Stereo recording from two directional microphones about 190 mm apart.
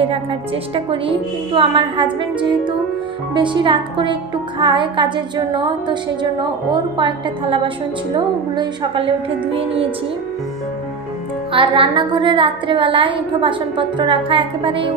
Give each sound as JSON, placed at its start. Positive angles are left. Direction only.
{"t": 0.0, "sound": "a woman's voice", "side_deg": -30}
{"t": 11.5, "sound": "a woman's voice", "side_deg": -25}